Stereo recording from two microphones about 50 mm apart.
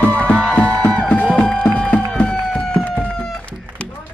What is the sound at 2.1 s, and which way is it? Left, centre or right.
Music, centre.